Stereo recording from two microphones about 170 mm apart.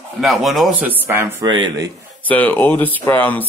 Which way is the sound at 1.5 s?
25° right (ahead or behind).